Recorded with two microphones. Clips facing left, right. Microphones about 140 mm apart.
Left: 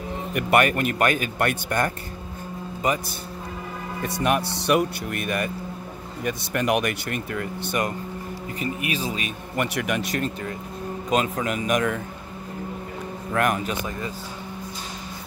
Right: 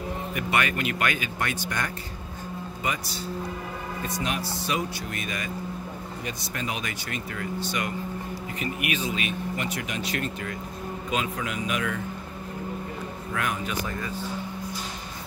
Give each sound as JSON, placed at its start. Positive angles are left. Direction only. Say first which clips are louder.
{"t": 0.3, "sound": "speech", "louder": "left 8 dB", "side_deg": 60}
{"t": 4.0, "sound": "speech", "louder": "left 8 dB", "side_deg": 60}
{"t": 7.6, "sound": "speech", "louder": "left 6 dB", "side_deg": 50}
{"t": 8.5, "sound": "a man's voice", "louder": "left 2 dB", "side_deg": 35}
{"t": 9.6, "sound": "speech", "louder": "left 6 dB", "side_deg": 65}
{"t": 10.1, "sound": "a man's voice", "louder": "left 3 dB", "side_deg": 35}
{"t": 13.3, "sound": "speech", "louder": "left 8 dB", "side_deg": 55}
{"t": 13.8, "sound": "speech", "louder": "left 2 dB", "side_deg": 20}